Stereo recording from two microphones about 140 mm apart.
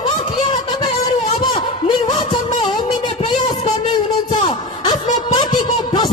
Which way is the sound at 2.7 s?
35° left (ahead or behind).